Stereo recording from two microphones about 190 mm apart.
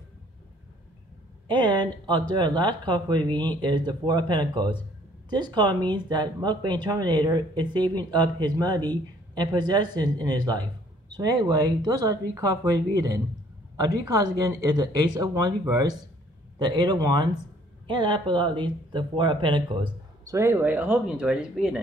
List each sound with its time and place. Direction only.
1.5 s speech: 25° right (ahead or behind)
16.5 s speech: 20° right (ahead or behind)
20.3 s speech: 15° right (ahead or behind)